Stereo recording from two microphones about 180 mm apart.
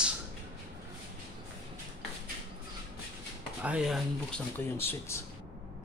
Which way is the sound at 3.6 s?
5° right (ahead or behind).